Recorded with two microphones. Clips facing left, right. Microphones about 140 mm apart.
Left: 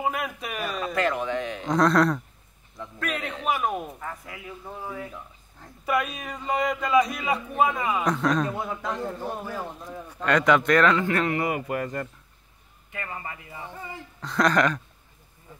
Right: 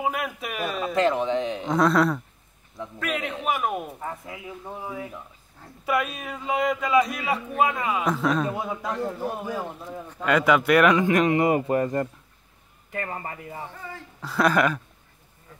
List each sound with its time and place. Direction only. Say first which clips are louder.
0.0 s speech: right 1 dB; centre (ahead or behind)
0.9 s speech: right 4 dB; 20° right (ahead or behind)
1.7 s a man's voice: left 1 dB; 5° right (ahead or behind)
4.0 s speech: right 3 dB; 20° right (ahead or behind)
12.9 s a man's voice: right 4 dB; 45° right (ahead or behind)
13.7 s speech: even; 15° left (ahead or behind)
14.2 s speech: right 1 dB; 5° right (ahead or behind)